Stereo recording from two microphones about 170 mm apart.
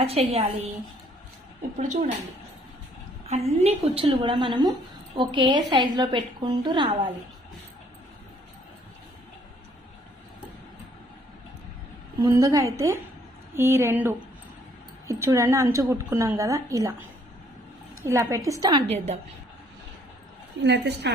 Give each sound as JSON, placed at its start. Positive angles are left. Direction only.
{"t": 0.0, "sound": "a woman's voice", "side_deg": -35}
{"t": 1.8, "sound": "a woman's voice", "side_deg": -45}
{"t": 3.2, "sound": "a woman's voice", "side_deg": -40}
{"t": 12.2, "sound": "a woman's voice", "side_deg": -20}
{"t": 18.0, "sound": "a woman's voice", "side_deg": -15}
{"t": 18.9, "sound": "a woman's voice", "side_deg": -40}
{"t": 20.6, "sound": "a woman's voice", "side_deg": -90}